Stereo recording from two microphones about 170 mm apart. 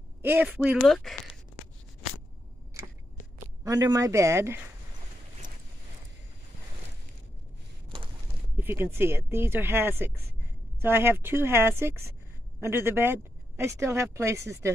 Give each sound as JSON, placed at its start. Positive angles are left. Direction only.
{"t": 0.2, "sound": "speech", "side_deg": -10}
{"t": 0.8, "sound": "speech", "side_deg": 0}
{"t": 2.8, "sound": "a sound", "side_deg": -15}
{"t": 3.6, "sound": "speech", "side_deg": -20}
{"t": 8.5, "sound": "speech", "side_deg": -10}